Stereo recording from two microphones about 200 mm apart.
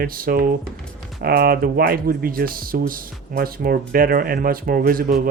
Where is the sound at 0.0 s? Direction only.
45° right (ahead or behind).